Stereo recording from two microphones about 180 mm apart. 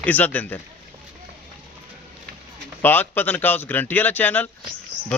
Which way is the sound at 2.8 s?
10° left (ahead or behind).